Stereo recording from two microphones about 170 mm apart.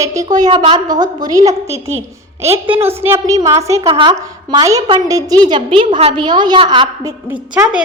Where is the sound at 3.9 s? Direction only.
30° right (ahead or behind).